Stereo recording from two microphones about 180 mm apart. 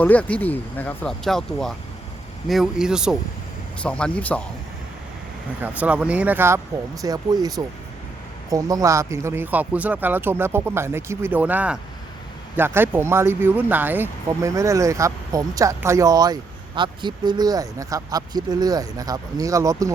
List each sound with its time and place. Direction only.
0.0 s speech: 10° left (ahead or behind)
5.6 s speech: 10° right (ahead or behind)